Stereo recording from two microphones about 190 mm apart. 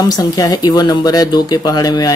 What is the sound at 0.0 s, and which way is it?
Speech, 20° left (ahead or behind).